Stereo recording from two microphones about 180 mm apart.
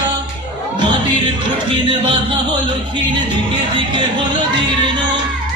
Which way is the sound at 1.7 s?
25° right (ahead or behind).